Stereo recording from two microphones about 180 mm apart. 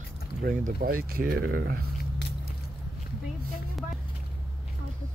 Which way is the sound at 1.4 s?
80° right.